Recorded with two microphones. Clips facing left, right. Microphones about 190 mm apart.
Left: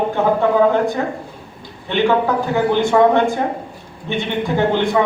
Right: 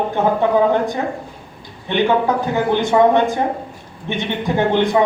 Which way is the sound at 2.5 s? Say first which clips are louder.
Left 2 dB; 15° right (ahead or behind).